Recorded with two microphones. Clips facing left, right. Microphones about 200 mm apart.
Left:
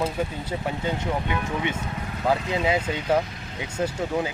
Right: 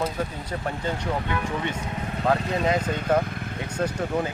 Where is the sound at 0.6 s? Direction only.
15° left (ahead or behind).